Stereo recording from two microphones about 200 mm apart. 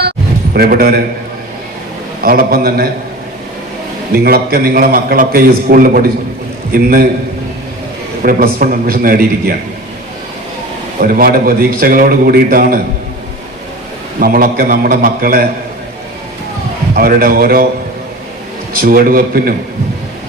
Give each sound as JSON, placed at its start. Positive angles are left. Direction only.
{"t": 0.5, "sound": "a man's voice", "side_deg": -50}
{"t": 2.2, "sound": "a man's voice", "side_deg": -45}
{"t": 4.1, "sound": "a man's voice", "side_deg": -50}
{"t": 8.2, "sound": "a man's voice", "side_deg": -45}
{"t": 11.0, "sound": "a man's voice", "side_deg": -45}
{"t": 14.2, "sound": "a man's voice", "side_deg": -45}
{"t": 16.9, "sound": "a man's voice", "side_deg": -45}
{"t": 18.7, "sound": "a man's voice", "side_deg": -45}